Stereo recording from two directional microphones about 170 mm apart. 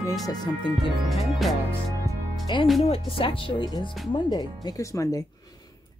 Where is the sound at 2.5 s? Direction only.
25° left (ahead or behind).